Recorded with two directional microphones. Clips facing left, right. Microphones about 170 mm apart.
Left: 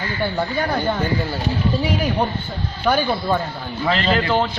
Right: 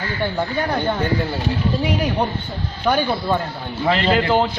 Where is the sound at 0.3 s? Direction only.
Centre (ahead or behind).